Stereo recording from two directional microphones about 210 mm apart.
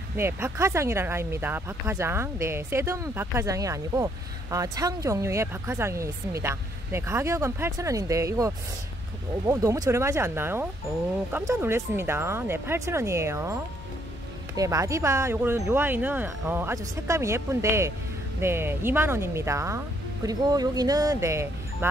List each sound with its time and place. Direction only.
0.2 s speech: 10° right (ahead or behind)
14.6 s speech: 15° right (ahead or behind)